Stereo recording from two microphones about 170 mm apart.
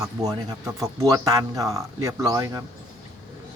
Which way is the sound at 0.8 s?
20° right (ahead or behind).